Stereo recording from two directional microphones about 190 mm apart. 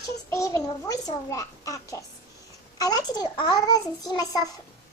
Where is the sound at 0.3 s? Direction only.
15° left (ahead or behind).